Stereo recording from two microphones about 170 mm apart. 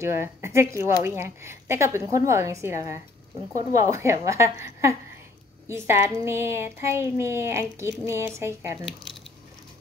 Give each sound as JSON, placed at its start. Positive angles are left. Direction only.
{"t": 0.0, "sound": "speech", "side_deg": -15}
{"t": 3.7, "sound": "speech", "side_deg": -15}
{"t": 8.8, "sound": "speech", "side_deg": 0}